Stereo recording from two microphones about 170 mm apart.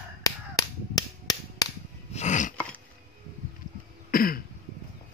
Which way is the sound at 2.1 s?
45° left (ahead or behind).